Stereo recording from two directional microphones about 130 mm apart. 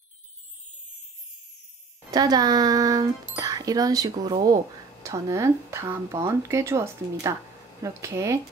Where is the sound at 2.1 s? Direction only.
30° right (ahead or behind).